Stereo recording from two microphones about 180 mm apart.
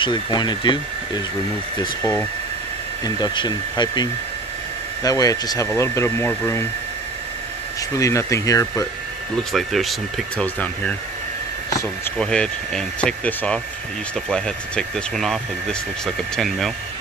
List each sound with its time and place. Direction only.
0.0 s speech: 25° left (ahead or behind)
3.0 s speech: 25° left (ahead or behind)
7.9 s speech: 15° left (ahead or behind)
9.5 s speech: centre (ahead or behind)
12.2 s speech: 5° left (ahead or behind)